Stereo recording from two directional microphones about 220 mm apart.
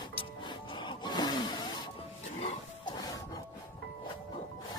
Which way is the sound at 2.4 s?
30° left (ahead or behind).